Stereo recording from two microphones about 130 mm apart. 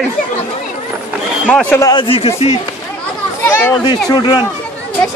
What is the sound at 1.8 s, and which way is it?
Speech, 30° left (ahead or behind).